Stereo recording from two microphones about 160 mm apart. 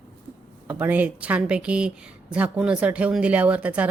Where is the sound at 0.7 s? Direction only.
10° right (ahead or behind).